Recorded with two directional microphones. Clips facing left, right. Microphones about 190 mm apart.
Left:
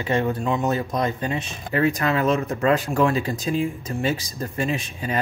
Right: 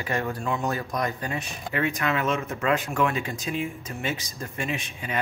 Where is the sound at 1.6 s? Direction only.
35° left (ahead or behind).